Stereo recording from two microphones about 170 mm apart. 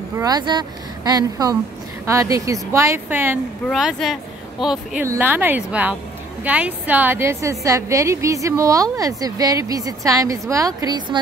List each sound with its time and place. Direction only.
0.2 s a woman's voice: 25° right (ahead or behind)
3.6 s speech: centre (ahead or behind)
5.0 s a woman's voice: 15° right (ahead or behind)